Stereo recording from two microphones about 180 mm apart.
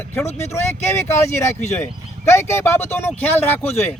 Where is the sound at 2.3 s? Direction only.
15° left (ahead or behind).